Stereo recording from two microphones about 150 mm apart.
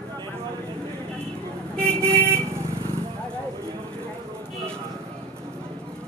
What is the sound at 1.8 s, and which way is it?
Vehicle, 15° right (ahead or behind).